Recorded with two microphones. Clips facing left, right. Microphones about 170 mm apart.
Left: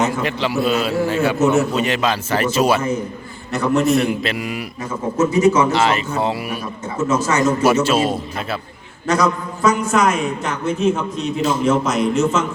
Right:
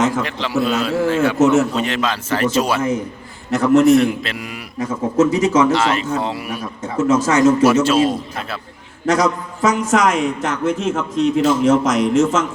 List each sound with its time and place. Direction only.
0.2 s a man's voice: 5° left (ahead or behind)
1.4 s a man's voice: 90° right
1.7 s a man's voice: 10° left (ahead or behind)
3.5 s a man's voice: 90° right
4.2 s a man's voice: 10° left (ahead or behind)
4.8 s a man's voice: 90° right
5.7 s a man's voice: 5° left (ahead or behind)
6.9 s a man's voice: 90° right
7.6 s a man's voice: 5° left (ahead or behind)
9.0 s a man's voice: 90° right